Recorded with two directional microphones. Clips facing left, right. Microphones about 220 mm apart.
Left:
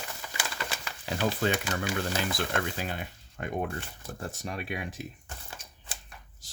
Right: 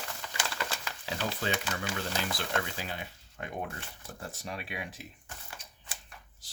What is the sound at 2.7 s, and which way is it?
Speech, 50° left (ahead or behind).